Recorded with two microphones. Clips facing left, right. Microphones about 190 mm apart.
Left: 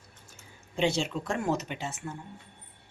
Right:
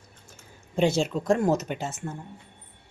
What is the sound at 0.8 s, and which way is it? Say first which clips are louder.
Speech: right 5 dB; 45° right (ahead or behind).